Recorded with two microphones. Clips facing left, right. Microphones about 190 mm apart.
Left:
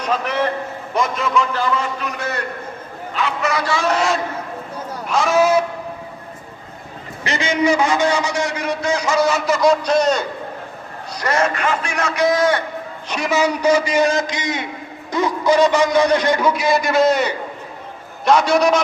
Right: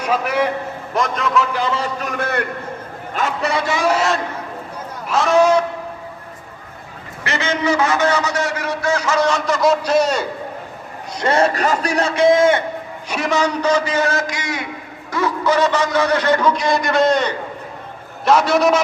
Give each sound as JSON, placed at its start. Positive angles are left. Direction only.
{"t": 0.0, "sound": "a man's voice", "side_deg": -10}
{"t": 0.9, "sound": "speech", "side_deg": 0}
{"t": 1.7, "sound": "a man's voice", "side_deg": -40}
{"t": 3.4, "sound": "a man's voice", "side_deg": -25}
{"t": 3.8, "sound": "speech", "side_deg": -5}
{"t": 7.3, "sound": "a man's voice", "side_deg": 15}
{"t": 11.2, "sound": "a man's voice", "side_deg": -30}
{"t": 13.1, "sound": "a man's voice", "side_deg": 0}